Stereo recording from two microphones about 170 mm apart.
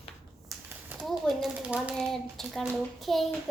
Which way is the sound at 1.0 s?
Centre (ahead or behind).